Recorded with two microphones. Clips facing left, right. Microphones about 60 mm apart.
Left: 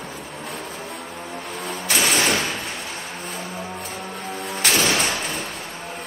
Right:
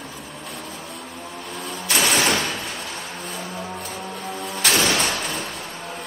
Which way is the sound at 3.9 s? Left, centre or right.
Centre.